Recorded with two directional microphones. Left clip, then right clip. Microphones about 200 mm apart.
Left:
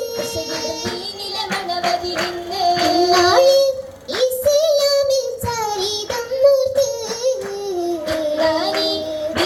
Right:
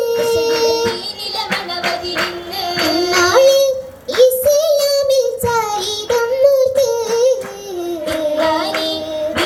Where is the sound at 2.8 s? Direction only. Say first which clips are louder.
Right 3 dB; 30° right (ahead or behind).